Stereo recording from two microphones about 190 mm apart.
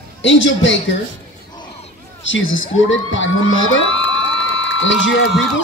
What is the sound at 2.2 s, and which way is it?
Speech, 85° left.